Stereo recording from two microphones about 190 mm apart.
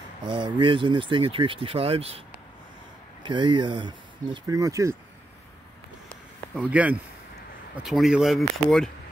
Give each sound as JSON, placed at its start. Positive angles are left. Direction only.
{"t": 0.2, "sound": "speech", "side_deg": -25}
{"t": 3.3, "sound": "speech", "side_deg": -25}
{"t": 6.5, "sound": "speech", "side_deg": -5}